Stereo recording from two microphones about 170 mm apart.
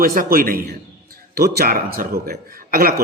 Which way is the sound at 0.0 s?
60° right (ahead or behind).